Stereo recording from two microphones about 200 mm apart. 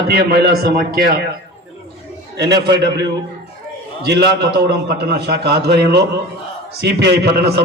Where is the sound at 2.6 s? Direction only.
55° right (ahead or behind).